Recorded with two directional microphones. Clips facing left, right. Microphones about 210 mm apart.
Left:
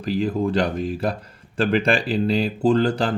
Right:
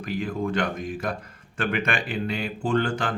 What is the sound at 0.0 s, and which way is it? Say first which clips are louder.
Speech: left 6 dB; 35° left (ahead or behind).